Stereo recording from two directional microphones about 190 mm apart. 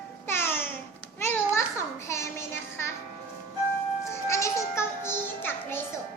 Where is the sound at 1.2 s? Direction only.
15° left (ahead or behind).